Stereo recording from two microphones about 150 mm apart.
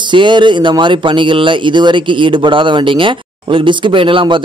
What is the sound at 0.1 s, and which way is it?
Speech, 30° right (ahead or behind).